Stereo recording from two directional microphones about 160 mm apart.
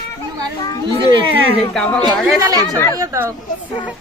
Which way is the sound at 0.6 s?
25° left (ahead or behind).